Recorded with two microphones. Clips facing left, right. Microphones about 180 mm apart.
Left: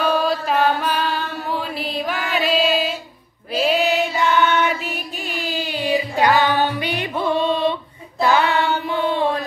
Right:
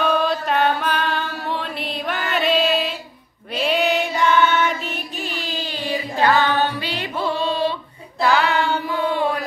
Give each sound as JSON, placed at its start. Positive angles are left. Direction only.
{"t": 0.0, "sound": "chant", "side_deg": 0}
{"t": 3.5, "sound": "female singing", "side_deg": 5}
{"t": 4.6, "sound": "music", "side_deg": 10}
{"t": 8.2, "sound": "mantra", "side_deg": 20}